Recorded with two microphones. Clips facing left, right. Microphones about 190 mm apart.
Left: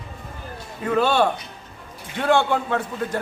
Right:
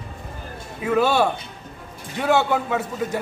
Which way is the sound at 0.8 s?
10° right (ahead or behind).